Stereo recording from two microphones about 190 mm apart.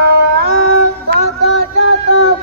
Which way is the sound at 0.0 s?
55° right (ahead or behind).